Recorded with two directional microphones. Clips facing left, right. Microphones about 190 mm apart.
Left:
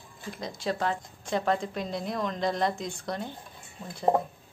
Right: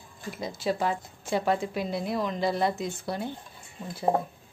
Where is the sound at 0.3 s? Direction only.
5° right (ahead or behind).